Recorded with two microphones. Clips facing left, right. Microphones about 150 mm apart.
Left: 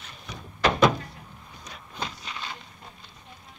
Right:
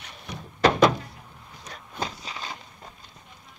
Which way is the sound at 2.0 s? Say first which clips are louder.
Right 3 dB; 35° right (ahead or behind).